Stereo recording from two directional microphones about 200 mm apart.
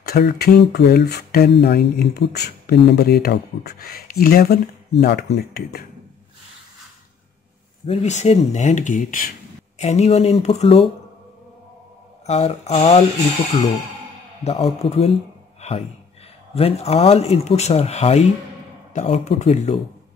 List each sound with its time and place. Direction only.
0.0 s speech: 50° left (ahead or behind)
7.8 s speech: 35° left (ahead or behind)
12.3 s speech: 30° left (ahead or behind)
14.4 s speech: 30° left (ahead or behind)
16.5 s speech: 30° left (ahead or behind)